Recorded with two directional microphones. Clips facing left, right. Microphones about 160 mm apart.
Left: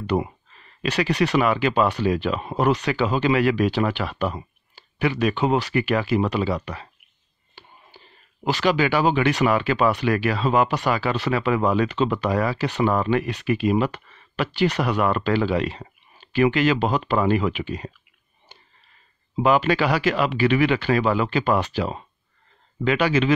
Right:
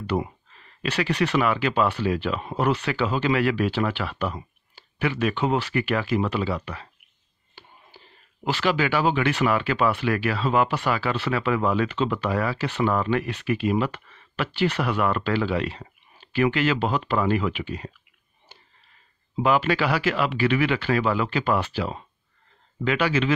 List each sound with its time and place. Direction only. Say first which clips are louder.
0.0 s a sound: left 3 dB; 15° left (ahead or behind)
0.8 s speech: left 2 dB; 15° left (ahead or behind)
8.5 s speech: left 3 dB; 15° left (ahead or behind)
19.4 s speech: left 3 dB; 20° left (ahead or behind)
22.8 s speech: left 3 dB; 20° left (ahead or behind)